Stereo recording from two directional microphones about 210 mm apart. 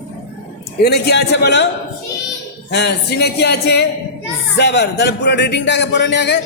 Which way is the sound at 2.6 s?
55° left (ahead or behind).